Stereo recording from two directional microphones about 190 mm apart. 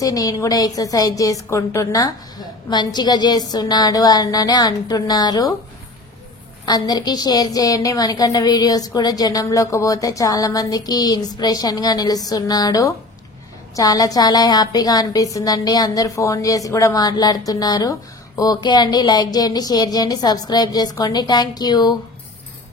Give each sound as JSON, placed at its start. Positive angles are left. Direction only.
{"t": 0.0, "sound": "a woman's voice", "side_deg": 20}
{"t": 6.6, "sound": "a woman's voice", "side_deg": 20}